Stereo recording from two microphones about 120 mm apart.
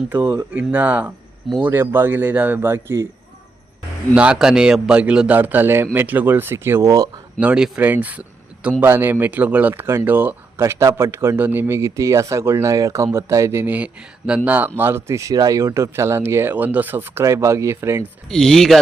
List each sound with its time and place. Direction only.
0.1 s a man's voice: 15° right (ahead or behind)
4.1 s a man's voice: 10° right (ahead or behind); by 7.1 s 30° right (ahead or behind)
7.3 s a man's voice: 10° right (ahead or behind)
18.3 s speech: 5° left (ahead or behind)